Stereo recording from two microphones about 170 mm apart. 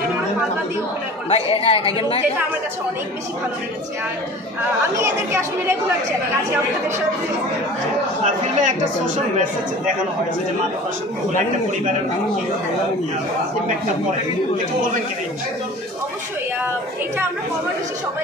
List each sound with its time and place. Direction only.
1.3 s a woman's voice: 35° left (ahead or behind)
4.9 s speech: 15° right (ahead or behind)
8.2 s speech: 45° right (ahead or behind)